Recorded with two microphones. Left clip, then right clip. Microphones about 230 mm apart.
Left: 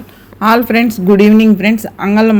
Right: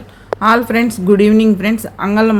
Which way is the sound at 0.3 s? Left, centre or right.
Centre.